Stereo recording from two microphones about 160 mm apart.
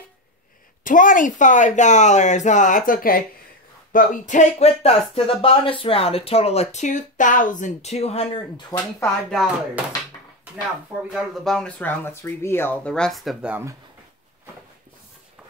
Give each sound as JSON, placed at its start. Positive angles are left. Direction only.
{"t": 0.8, "sound": "speech", "side_deg": 55}
{"t": 3.9, "sound": "speech", "side_deg": 50}
{"t": 8.5, "sound": "speech", "side_deg": 25}
{"t": 11.1, "sound": "speech", "side_deg": 0}